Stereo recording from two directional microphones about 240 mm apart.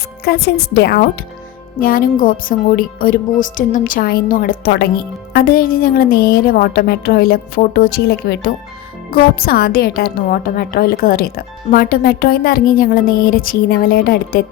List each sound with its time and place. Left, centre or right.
0.3 s a woman's voice: left